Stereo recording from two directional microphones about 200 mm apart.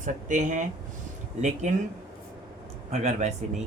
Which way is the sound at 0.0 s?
40° right (ahead or behind).